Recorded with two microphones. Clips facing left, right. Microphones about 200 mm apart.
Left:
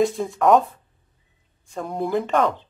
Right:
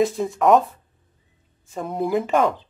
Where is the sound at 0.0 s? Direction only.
Centre (ahead or behind).